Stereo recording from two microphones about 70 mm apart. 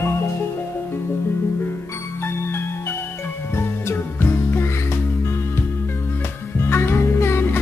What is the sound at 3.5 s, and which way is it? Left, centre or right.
Music, left.